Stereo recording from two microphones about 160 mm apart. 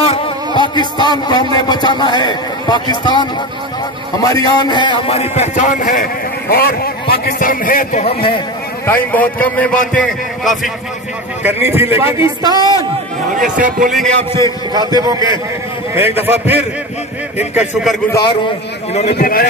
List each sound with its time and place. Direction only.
0.0 s a sound: 40° left (ahead or behind)
0.6 s music: 30° left (ahead or behind)
1.2 s a man's voice: 25° left (ahead or behind); by 6.0 s 55° left (ahead or behind)
6.5 s a man's voice: 70° left (ahead or behind)
8.0 s a man's voice: 35° left (ahead or behind)
8.8 s a man's voice: 10° left (ahead or behind)
11.4 s speech: 15° right (ahead or behind)
12.4 s a man's voice: 25° right (ahead or behind)
13.4 s speech: 55° right (ahead or behind)
15.0 s a man's voice: 25° right (ahead or behind); by 17.9 s 5° right (ahead or behind)
19.0 s a man's voice: 70° left (ahead or behind)